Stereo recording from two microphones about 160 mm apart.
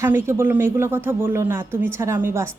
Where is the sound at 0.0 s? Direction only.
15° right (ahead or behind).